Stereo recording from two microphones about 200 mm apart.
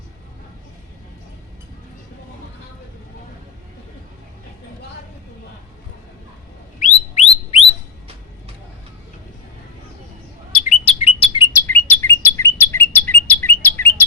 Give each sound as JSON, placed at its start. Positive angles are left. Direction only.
{"t": 6.7, "sound": "bird", "side_deg": 35}
{"t": 10.6, "sound": "chirp", "side_deg": 35}
{"t": 11.5, "sound": "bird", "side_deg": 10}